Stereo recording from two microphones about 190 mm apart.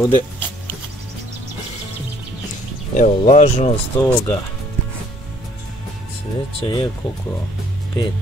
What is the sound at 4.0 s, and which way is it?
Speech, 10° left (ahead or behind).